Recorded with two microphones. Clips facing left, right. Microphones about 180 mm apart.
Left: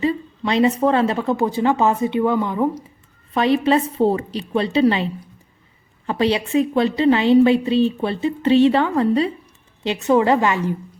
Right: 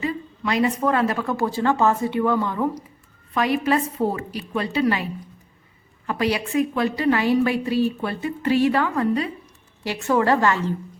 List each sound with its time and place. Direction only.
0.0 s a woman's voice: 25° left (ahead or behind)
6.1 s a woman's voice: 25° left (ahead or behind)